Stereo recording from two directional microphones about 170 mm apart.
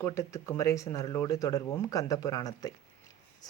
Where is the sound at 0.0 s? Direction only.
15° left (ahead or behind).